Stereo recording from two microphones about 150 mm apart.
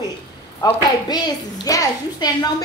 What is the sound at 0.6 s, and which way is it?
A woman's voice, 25° left (ahead or behind).